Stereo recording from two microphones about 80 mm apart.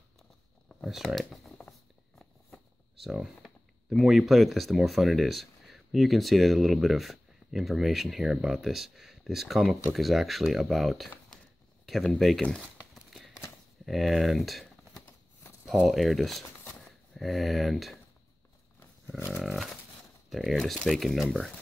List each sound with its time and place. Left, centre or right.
0.8 s a sound: centre
3.0 s speech: centre
12.4 s a sound: centre
13.8 s speech: centre
19.0 s dog: left
19.4 s dog: centre
20.2 s speech: centre